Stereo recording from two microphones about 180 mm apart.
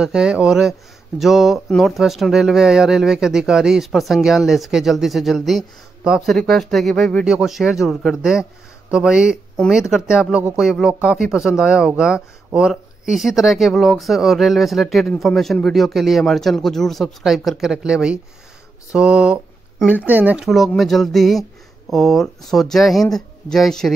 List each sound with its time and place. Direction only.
0.0 s speech: 5° right (ahead or behind)